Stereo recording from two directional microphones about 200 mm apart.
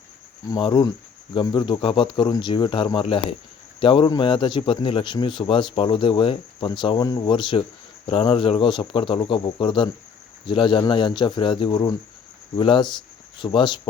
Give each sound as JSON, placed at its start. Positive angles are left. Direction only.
{"t": 0.5, "sound": "speech", "side_deg": 20}